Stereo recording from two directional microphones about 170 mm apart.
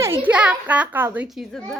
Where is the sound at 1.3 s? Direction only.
Centre (ahead or behind).